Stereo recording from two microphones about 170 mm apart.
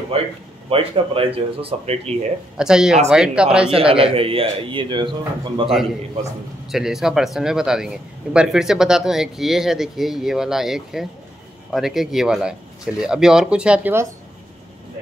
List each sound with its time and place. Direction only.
0.1 s speech: 35° right (ahead or behind)
2.5 s a man's voice: 5° right (ahead or behind)
3.7 s speech: 35° right (ahead or behind)
6.7 s a man's voice: centre (ahead or behind)